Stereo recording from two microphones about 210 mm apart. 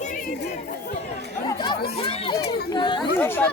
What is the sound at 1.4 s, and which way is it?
Chatter, 20° left (ahead or behind).